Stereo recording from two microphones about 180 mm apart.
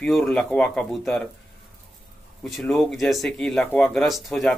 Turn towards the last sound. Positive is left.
turn(degrees=0)  # may be behind; listen again after turning